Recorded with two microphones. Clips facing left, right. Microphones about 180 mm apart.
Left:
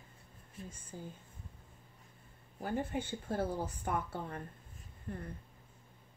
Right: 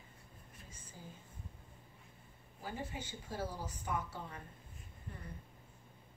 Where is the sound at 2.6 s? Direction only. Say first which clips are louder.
Left 8 dB; 55° left (ahead or behind).